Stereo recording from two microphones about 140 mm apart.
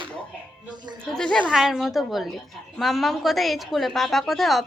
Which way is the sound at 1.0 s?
5° left (ahead or behind).